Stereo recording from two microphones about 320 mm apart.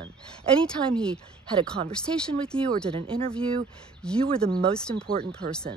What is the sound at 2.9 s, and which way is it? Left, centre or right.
Speech, centre.